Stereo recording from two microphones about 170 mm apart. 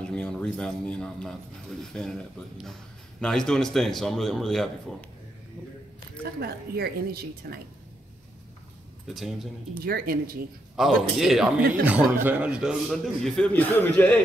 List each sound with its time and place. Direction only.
0.1 s a man's voice: 5° left (ahead or behind)
6.4 s a woman's voice: 65° right (ahead or behind)
9.0 s a man's voice: centre (ahead or behind)
9.8 s a woman's voice: 60° right (ahead or behind)
10.8 s a man's voice: centre (ahead or behind)